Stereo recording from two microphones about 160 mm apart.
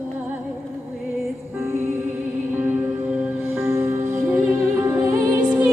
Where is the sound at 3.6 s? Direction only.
15° right (ahead or behind).